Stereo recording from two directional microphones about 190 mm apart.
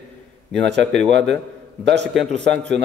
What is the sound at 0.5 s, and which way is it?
Speech, 65° right (ahead or behind).